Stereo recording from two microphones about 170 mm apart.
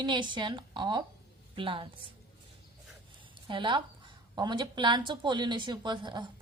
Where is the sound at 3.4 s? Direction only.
30° right (ahead or behind).